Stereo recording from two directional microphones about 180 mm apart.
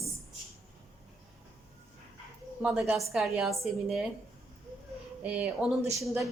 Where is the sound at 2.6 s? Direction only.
5° right (ahead or behind).